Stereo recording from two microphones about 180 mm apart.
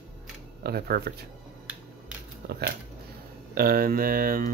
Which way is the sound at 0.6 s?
60° right (ahead or behind).